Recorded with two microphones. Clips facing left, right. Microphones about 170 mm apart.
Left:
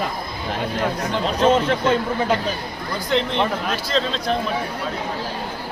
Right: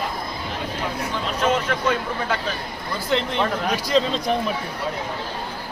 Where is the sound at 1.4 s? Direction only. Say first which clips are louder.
Left 5 dB; 30° left (ahead or behind).